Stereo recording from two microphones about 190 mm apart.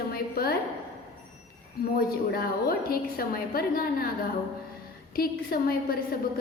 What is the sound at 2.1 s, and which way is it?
A woman's voice, 50° left (ahead or behind).